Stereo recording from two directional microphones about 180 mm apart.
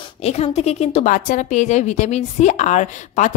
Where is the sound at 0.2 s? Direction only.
35° left (ahead or behind).